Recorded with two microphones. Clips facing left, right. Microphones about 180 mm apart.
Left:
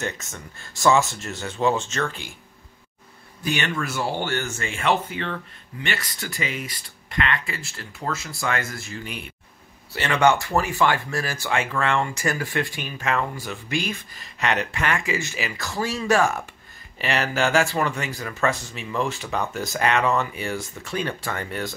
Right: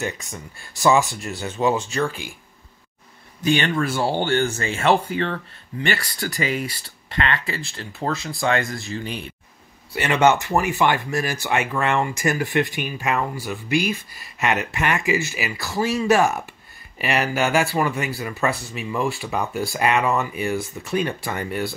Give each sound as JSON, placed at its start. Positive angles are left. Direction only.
{"t": 0.0, "sound": "speech", "side_deg": -15}
{"t": 3.4, "sound": "speech", "side_deg": -30}
{"t": 8.4, "sound": "speech", "side_deg": -20}